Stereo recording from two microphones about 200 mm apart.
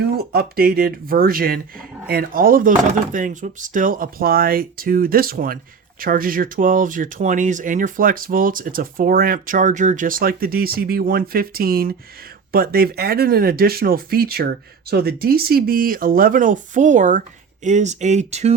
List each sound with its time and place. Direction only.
0.3 s speech: 50° right (ahead or behind); by 18.5 s 35° right (ahead or behind)